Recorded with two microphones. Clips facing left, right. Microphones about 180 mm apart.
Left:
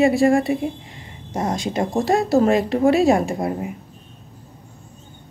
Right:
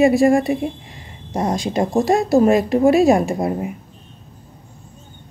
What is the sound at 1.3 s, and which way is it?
Speech, 30° right (ahead or behind).